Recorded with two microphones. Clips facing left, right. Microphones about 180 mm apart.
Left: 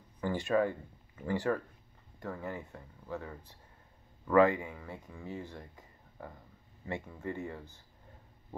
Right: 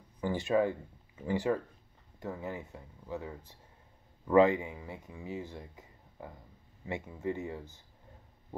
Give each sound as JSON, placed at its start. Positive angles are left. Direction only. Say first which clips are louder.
{"t": 0.2, "sound": "speech", "louder": "right 1 dB", "side_deg": -15}